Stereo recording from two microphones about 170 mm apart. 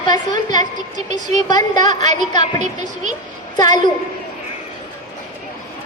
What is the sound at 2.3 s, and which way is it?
A woman's voice, 25° left (ahead or behind).